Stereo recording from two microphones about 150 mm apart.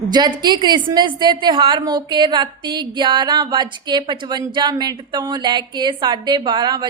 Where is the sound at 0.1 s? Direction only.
30° right (ahead or behind).